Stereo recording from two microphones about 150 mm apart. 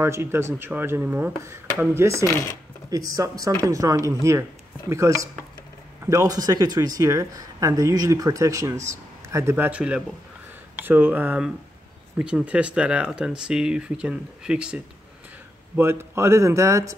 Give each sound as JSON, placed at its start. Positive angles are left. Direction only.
{"t": 0.0, "sound": "speech", "side_deg": -15}
{"t": 2.2, "sound": "speech", "side_deg": 20}
{"t": 2.9, "sound": "speech", "side_deg": -25}